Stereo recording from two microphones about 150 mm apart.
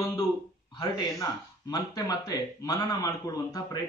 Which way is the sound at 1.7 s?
25° left (ahead or behind).